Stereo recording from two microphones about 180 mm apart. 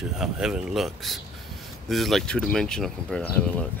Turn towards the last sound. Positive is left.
turn(degrees=5)  # may be behind; listen again after turning